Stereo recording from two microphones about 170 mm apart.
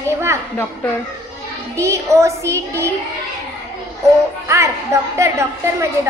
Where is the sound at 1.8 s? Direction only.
15° right (ahead or behind).